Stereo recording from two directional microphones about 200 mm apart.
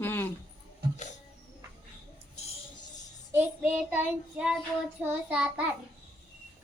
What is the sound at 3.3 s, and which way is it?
Child singing, 5° right (ahead or behind).